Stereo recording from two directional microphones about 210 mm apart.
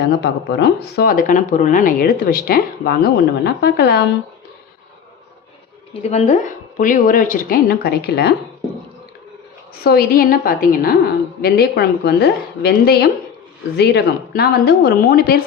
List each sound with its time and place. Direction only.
0.2 s speech: 55° left (ahead or behind)
5.9 s a woman's voice: 30° left (ahead or behind); by 8.4 s 50° left (ahead or behind)
9.8 s speech: 45° left (ahead or behind)